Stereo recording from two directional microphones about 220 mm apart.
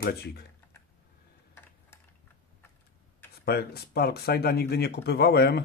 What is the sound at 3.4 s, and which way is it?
Speech, 45° left (ahead or behind).